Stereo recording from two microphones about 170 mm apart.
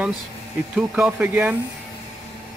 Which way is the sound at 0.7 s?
5° right (ahead or behind).